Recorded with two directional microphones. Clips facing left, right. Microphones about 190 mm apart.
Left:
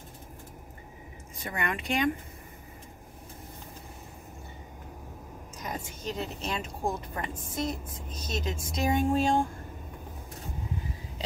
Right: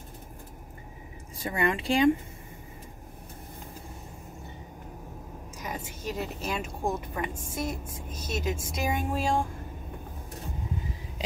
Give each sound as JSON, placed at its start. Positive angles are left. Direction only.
{"t": 1.4, "sound": "speech", "side_deg": -30}
{"t": 5.6, "sound": "speech", "side_deg": -5}